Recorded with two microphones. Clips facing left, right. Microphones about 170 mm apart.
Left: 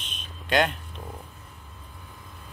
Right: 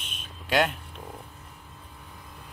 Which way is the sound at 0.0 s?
10° right (ahead or behind).